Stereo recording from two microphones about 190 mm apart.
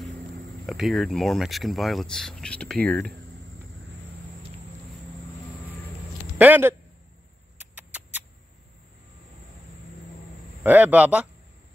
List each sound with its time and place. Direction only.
0.7 s speech: centre (ahead or behind)
6.3 s a man's voice: 10° right (ahead or behind)
7.7 s rodents: 5° right (ahead or behind)
10.6 s a man's voice: 10° right (ahead or behind)